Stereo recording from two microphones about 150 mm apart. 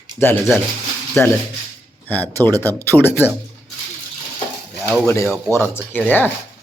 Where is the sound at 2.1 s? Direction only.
10° left (ahead or behind).